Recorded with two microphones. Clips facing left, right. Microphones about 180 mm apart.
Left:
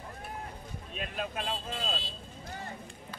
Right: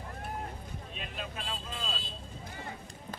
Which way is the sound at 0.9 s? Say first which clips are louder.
Left 6 dB; 50° left (ahead or behind).